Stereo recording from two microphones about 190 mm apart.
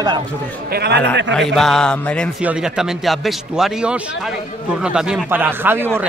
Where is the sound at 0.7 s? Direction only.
60° right (ahead or behind).